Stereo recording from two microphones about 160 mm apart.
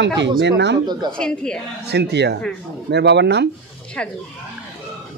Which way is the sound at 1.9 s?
90° right.